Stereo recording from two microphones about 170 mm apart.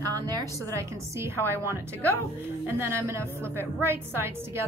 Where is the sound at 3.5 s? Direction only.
15° right (ahead or behind).